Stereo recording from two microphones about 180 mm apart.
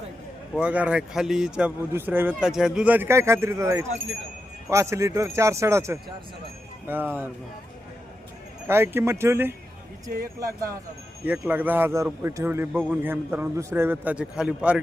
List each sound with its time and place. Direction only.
0.5 s speech: 10° right (ahead or behind)
8.6 s speech: 10° right (ahead or behind)
11.3 s speech: 10° right (ahead or behind)